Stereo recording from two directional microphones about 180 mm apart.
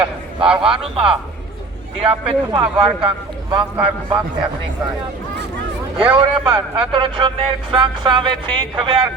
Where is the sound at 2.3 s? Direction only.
30° right (ahead or behind).